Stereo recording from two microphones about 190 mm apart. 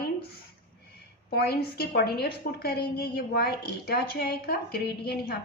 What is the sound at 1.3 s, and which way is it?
A woman's voice, 55° left (ahead or behind).